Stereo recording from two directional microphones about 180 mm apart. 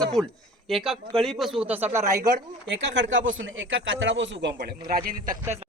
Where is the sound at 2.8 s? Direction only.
85° right; by 5.4 s 50° right (ahead or behind).